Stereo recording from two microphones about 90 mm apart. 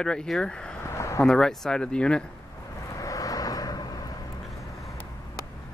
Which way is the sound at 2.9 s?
40° left (ahead or behind).